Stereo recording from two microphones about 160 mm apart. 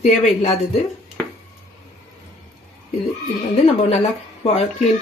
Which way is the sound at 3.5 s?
40° left (ahead or behind).